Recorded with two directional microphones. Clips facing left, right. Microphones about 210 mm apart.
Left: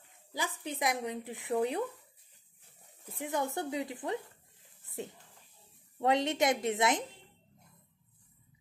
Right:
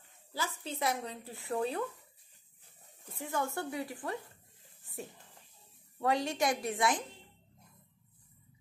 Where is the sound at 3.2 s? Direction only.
20° left (ahead or behind).